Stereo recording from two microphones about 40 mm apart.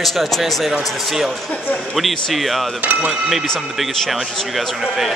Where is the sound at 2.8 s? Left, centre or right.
Right.